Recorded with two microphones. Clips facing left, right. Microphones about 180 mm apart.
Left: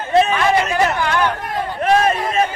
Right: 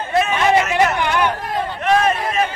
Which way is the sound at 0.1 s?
30° left (ahead or behind).